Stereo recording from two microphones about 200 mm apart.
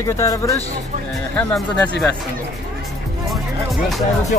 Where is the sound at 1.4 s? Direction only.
5° left (ahead or behind).